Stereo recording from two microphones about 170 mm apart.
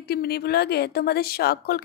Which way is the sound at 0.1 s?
65° left (ahead or behind).